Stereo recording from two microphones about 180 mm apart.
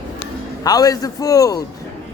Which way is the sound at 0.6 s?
20° left (ahead or behind).